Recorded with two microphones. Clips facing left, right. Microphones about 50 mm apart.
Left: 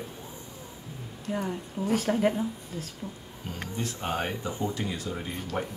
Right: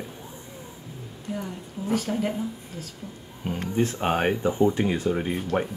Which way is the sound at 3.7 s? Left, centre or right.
Right.